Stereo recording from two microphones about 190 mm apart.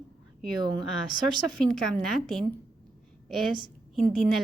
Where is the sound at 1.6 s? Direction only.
Centre (ahead or behind).